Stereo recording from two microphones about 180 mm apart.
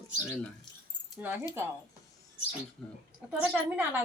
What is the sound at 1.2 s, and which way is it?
Speech, 10° right (ahead or behind).